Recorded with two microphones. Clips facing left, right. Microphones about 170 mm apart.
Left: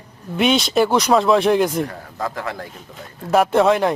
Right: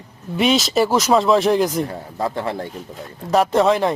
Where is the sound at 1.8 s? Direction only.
30° right (ahead or behind).